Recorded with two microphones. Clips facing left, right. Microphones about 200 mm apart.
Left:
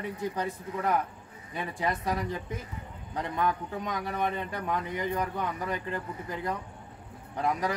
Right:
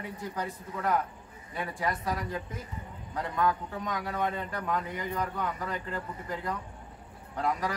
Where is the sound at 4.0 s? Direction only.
20° left (ahead or behind).